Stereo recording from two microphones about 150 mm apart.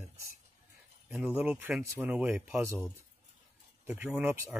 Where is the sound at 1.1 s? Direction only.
5° right (ahead or behind).